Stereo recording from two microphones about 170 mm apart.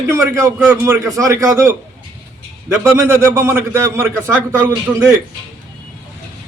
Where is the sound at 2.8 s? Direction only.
15° right (ahead or behind).